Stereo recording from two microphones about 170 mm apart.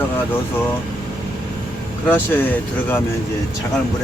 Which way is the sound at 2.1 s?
10° left (ahead or behind).